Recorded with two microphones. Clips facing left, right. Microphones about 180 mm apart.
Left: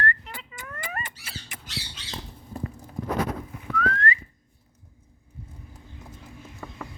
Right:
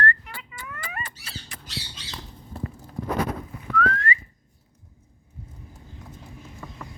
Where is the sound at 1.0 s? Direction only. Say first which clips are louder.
Right 1 dB; 20° left (ahead or behind).